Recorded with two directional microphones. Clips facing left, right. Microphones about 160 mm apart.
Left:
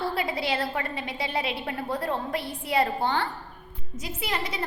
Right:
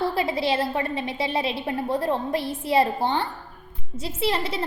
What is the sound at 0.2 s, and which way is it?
A woman's voice, 25° right (ahead or behind).